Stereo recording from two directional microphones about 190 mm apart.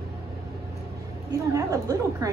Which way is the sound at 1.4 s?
15° right (ahead or behind).